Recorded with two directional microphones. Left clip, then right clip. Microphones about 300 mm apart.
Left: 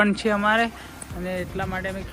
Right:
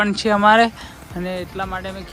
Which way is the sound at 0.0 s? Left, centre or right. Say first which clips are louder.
Right 5 dB; centre.